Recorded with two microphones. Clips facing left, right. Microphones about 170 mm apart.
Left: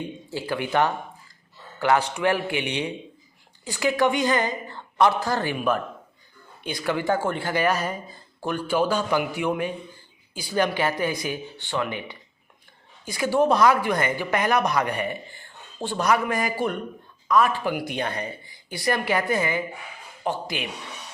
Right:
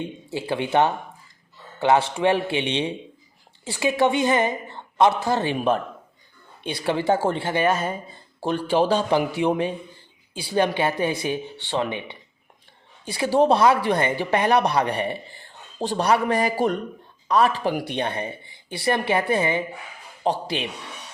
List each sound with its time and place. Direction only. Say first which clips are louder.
0.3 s speech: right 2 dB; 20° right (ahead or behind)